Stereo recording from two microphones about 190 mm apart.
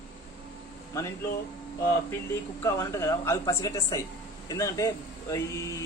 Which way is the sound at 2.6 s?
15° left (ahead or behind).